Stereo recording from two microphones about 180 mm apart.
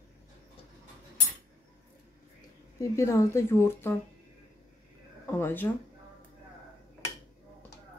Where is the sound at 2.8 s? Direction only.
15° left (ahead or behind).